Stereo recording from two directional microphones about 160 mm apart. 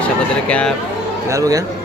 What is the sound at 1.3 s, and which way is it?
Speech, 20° right (ahead or behind).